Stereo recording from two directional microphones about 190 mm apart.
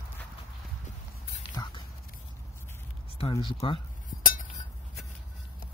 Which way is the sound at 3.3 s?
25° left (ahead or behind).